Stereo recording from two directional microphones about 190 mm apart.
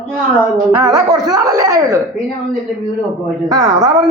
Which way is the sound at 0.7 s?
20° right (ahead or behind).